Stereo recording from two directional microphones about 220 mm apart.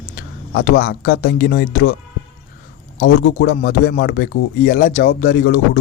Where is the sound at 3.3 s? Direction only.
40° left (ahead or behind).